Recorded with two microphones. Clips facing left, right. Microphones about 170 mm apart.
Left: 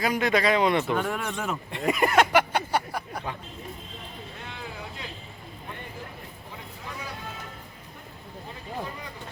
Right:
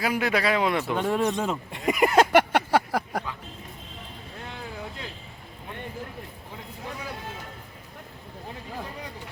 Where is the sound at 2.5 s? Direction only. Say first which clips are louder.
Right 4 dB; 90° right.